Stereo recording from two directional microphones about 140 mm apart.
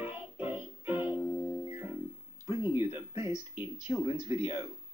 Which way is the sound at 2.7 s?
15° right (ahead or behind).